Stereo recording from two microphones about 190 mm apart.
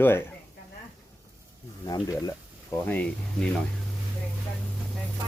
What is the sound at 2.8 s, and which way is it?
Speech, 5° left (ahead or behind).